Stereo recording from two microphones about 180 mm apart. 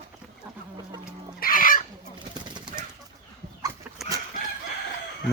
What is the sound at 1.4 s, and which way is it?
Chicken, 50° left (ahead or behind).